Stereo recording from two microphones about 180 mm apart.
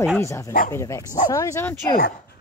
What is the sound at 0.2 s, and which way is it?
Speech, 15° left (ahead or behind).